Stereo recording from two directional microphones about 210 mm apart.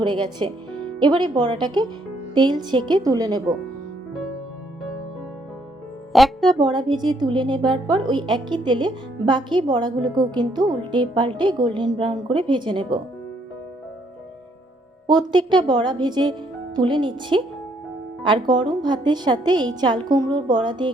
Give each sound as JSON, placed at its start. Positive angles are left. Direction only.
{"t": 0.0, "sound": "a woman's voice", "side_deg": -20}
{"t": 6.1, "sound": "speech", "side_deg": 0}
{"t": 6.6, "sound": "a woman's voice", "side_deg": -20}
{"t": 15.0, "sound": "a woman's voice", "side_deg": -20}